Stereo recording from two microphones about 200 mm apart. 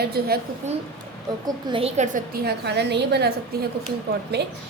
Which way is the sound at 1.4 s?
25° right (ahead or behind).